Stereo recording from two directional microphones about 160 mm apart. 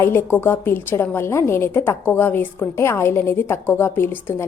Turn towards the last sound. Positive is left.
turn(degrees=15)  # may be behind; listen again after turning